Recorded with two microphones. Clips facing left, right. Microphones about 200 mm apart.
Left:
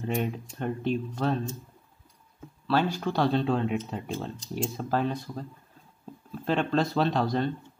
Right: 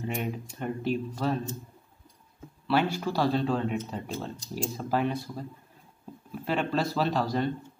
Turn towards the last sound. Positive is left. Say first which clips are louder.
# left 2 dB
turn(degrees=-5)  # may be behind; listen again after turning